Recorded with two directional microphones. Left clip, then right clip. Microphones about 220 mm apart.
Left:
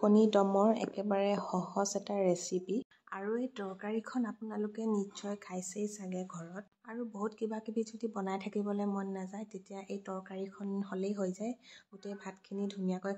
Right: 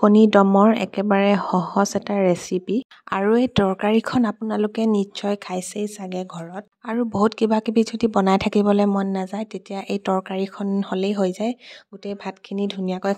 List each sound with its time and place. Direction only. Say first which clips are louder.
0.0 s speech: right 13 dB; 40° right (ahead or behind)